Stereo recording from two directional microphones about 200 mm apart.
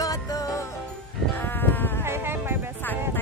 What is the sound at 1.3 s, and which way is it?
Sheep, 10° left (ahead or behind).